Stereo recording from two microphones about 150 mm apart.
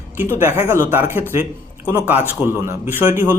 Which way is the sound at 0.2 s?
15° right (ahead or behind).